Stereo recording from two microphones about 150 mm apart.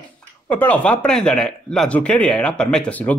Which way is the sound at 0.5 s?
10° left (ahead or behind).